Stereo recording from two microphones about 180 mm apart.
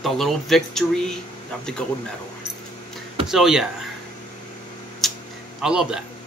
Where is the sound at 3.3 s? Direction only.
Centre (ahead or behind).